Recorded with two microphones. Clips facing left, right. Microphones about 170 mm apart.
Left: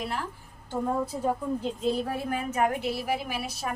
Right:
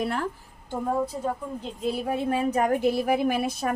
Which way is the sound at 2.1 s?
30° right (ahead or behind).